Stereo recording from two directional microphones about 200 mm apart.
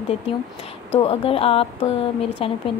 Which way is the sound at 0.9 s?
30° left (ahead or behind).